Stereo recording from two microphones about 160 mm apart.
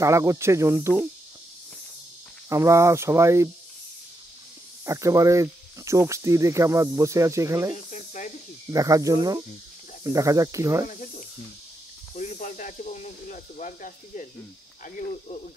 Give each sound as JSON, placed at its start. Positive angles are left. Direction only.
{"t": 0.0, "sound": "speech", "side_deg": -20}
{"t": 2.5, "sound": "speech", "side_deg": -20}
{"t": 4.8, "sound": "speech", "side_deg": -20}
{"t": 7.7, "sound": "snake", "side_deg": 50}
{"t": 8.6, "sound": "speech", "side_deg": -20}
{"t": 10.9, "sound": "speech", "side_deg": 50}